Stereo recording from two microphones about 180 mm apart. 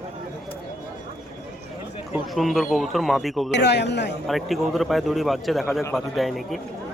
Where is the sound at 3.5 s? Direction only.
70° left (ahead or behind).